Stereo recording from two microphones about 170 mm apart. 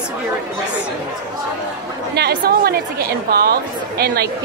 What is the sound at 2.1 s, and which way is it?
A woman's voice, 70° right (ahead or behind).